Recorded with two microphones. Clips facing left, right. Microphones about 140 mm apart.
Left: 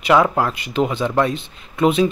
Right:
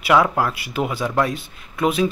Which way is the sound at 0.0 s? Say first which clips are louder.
Left 2 dB; 5° right (ahead or behind).